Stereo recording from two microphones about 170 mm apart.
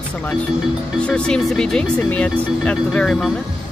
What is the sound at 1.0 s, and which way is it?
Speech, 5° left (ahead or behind).